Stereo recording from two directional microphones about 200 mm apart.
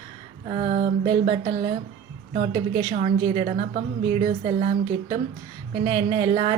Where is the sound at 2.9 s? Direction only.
30° right (ahead or behind).